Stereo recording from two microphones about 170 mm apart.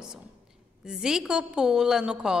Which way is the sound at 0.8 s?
5° right (ahead or behind).